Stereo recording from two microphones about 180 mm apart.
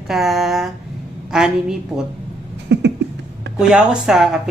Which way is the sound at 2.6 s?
75° right (ahead or behind).